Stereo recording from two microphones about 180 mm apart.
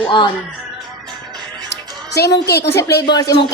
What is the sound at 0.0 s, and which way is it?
Speech, 25° left (ahead or behind).